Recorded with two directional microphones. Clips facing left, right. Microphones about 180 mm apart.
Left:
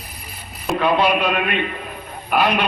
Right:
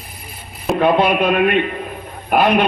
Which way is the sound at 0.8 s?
50° right (ahead or behind).